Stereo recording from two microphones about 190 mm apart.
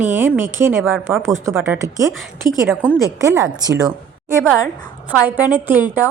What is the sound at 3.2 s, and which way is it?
Speech, 15° right (ahead or behind).